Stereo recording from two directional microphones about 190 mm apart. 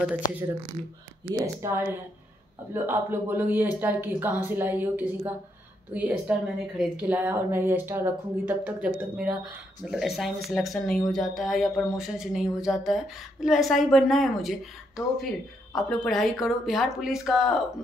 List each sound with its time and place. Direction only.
1.3 s speech: 15° right (ahead or behind)
2.7 s speech: 10° right (ahead or behind)